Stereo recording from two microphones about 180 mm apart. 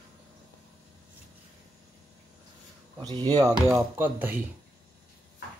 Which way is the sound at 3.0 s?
25° right (ahead or behind).